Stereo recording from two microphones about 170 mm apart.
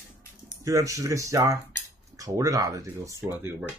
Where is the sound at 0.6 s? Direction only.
20° right (ahead or behind).